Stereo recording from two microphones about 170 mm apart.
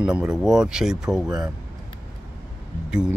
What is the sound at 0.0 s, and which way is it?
Speech, 5° right (ahead or behind).